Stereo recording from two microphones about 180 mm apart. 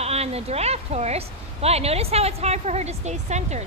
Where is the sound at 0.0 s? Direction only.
35° right (ahead or behind).